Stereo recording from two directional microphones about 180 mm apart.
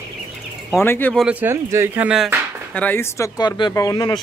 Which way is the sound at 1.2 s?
10° right (ahead or behind).